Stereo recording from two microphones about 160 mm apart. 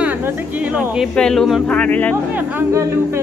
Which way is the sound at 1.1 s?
5° left (ahead or behind).